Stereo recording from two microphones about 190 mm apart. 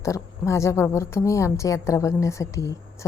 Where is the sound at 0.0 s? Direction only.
15° left (ahead or behind).